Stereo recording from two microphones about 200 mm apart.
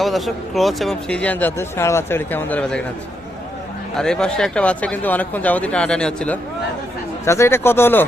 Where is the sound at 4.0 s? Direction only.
5° left (ahead or behind).